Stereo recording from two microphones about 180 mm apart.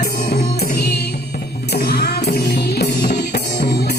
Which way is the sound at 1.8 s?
60° left (ahead or behind).